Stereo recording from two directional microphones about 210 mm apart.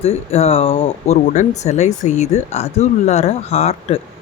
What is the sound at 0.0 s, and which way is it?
Speech, 30° left (ahead or behind).